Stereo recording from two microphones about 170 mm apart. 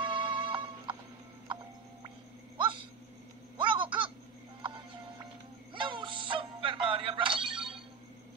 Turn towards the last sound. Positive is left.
turn(degrees=-30)  # may be behind; listen again after turning